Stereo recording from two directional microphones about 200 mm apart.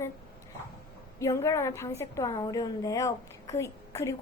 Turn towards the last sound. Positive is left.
turn(degrees=15)  # may be behind; listen again after turning